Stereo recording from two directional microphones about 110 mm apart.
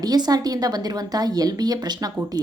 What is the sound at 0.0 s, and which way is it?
Speech, 35° right (ahead or behind).